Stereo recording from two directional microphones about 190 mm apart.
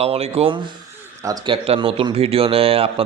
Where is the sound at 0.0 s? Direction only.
30° right (ahead or behind).